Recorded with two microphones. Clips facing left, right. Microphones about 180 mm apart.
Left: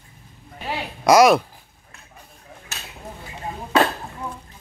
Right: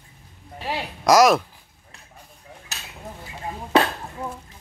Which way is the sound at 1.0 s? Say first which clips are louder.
Left 2 dB; centre (ahead or behind).